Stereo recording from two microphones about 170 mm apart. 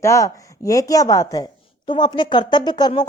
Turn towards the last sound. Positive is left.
turn(degrees=25)  # may be behind; listen again after turning